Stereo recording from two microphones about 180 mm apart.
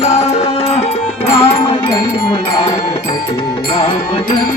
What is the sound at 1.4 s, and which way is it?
Music, 30° left (ahead or behind).